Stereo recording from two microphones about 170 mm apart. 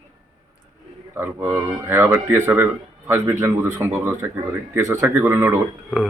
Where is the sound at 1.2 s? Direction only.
10° right (ahead or behind).